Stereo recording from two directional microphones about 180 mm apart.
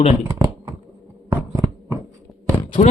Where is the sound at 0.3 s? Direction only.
25° right (ahead or behind).